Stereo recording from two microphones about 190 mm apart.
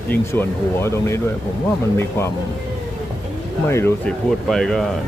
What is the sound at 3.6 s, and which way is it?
Speech, 10° left (ahead or behind).